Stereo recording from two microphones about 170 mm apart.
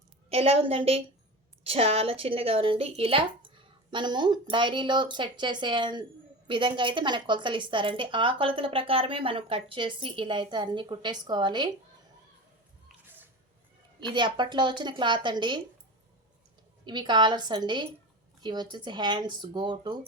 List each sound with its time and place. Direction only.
0.3 s a woman's voice: 35° right (ahead or behind)
14.1 s a woman's voice: 30° right (ahead or behind)
16.8 s a woman's voice: 25° right (ahead or behind)